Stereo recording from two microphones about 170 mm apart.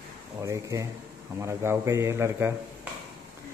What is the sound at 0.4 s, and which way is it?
Speech, 20° right (ahead or behind).